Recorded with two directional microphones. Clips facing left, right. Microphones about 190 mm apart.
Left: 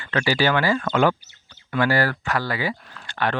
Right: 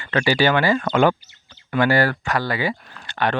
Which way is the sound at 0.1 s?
25° right (ahead or behind).